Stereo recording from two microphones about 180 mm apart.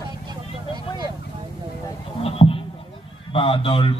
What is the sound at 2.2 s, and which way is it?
Rowboat, 30° left (ahead or behind).